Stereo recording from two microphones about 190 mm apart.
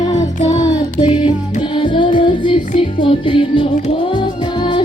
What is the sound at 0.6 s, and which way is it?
Child singing, 20° left (ahead or behind).